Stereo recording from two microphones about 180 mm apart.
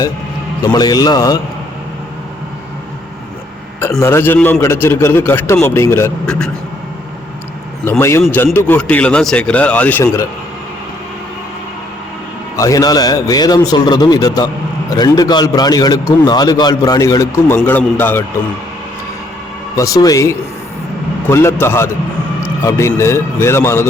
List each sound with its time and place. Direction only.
0.6 s a man's voice: 20° left (ahead or behind)
4.0 s a man's voice: 15° left (ahead or behind)
7.9 s a man's voice: 15° left (ahead or behind)
12.5 s a man's voice: 20° left (ahead or behind)
19.7 s a man's voice: 20° left (ahead or behind)